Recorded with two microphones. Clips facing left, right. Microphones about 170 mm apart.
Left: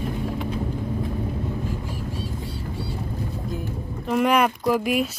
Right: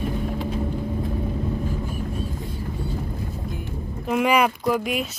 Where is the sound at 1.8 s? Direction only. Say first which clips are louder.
Right 2 dB; 90° left.